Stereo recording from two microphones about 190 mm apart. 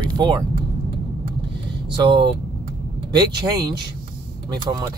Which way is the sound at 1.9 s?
25° right (ahead or behind).